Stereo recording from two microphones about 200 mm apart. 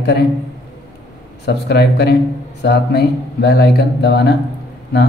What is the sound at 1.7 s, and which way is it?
Speech, 55° left (ahead or behind).